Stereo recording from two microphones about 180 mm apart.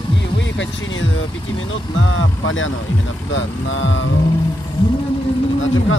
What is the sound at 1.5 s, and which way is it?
Speech, 90° left.